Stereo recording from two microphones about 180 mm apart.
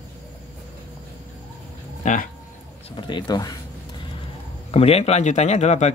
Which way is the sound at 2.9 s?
25° left (ahead or behind).